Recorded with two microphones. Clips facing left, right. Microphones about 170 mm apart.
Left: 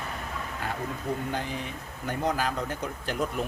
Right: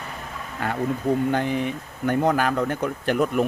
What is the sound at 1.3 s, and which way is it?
Speech, 65° right (ahead or behind).